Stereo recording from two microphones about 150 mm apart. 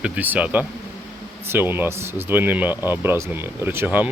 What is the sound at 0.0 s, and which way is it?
Speech, 10° right (ahead or behind).